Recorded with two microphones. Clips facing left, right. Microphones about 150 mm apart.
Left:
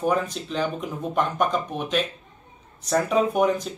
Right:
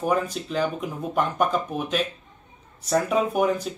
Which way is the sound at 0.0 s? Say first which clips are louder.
Even; 5° right (ahead or behind).